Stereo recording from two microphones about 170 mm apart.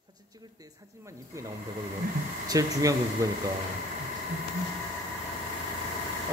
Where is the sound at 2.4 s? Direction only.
20° right (ahead or behind).